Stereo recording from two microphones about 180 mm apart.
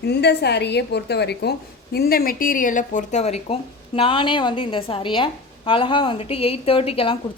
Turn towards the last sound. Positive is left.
turn(degrees=30)  # may be behind; listen again after turning